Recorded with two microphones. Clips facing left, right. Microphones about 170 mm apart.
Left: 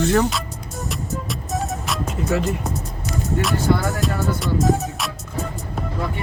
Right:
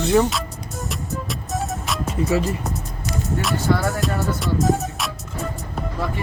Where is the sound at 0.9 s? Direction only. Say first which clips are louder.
Left 1 dB; centre (ahead or behind).